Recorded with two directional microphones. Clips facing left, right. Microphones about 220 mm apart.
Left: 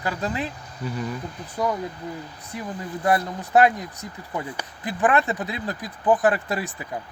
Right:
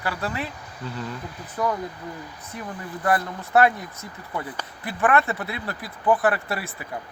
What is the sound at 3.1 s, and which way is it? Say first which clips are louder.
Speech: left 1 dB; 15° left (ahead or behind).